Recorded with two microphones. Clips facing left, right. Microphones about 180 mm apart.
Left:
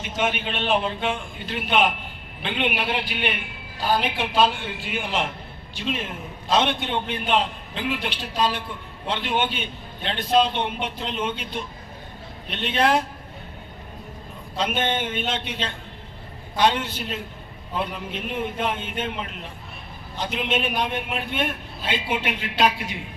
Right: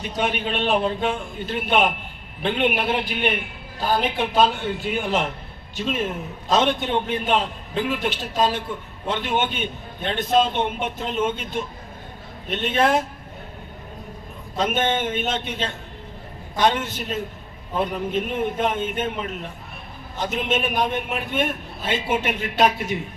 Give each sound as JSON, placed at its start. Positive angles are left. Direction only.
{"t": 0.0, "sound": "a man's voice", "side_deg": -35}
{"t": 14.5, "sound": "a woman's voice", "side_deg": -45}